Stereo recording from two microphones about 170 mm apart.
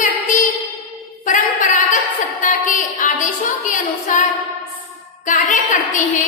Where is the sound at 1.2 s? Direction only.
50° left (ahead or behind).